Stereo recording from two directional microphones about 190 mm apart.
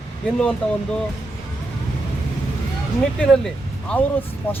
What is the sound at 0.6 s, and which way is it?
Speech, 10° left (ahead or behind).